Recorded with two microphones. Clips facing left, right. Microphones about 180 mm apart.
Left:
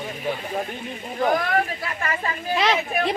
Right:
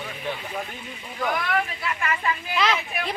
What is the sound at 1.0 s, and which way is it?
Speech, 40° left (ahead or behind).